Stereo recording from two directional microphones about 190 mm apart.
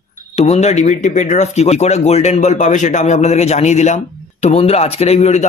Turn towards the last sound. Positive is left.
turn(degrees=35)  # may be behind; listen again after turning